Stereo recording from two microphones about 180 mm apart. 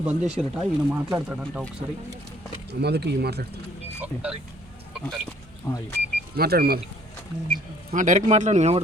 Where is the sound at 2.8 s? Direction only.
65° right (ahead or behind).